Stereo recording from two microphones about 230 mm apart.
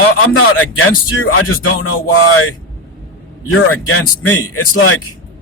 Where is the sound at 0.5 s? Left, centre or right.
Left.